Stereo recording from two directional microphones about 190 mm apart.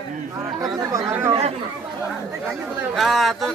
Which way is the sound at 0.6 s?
15° right (ahead or behind).